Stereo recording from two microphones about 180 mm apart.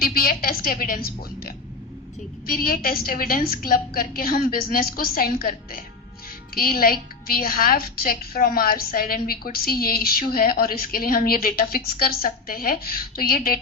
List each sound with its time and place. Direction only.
0.0 s a woman's voice: 55° left (ahead or behind)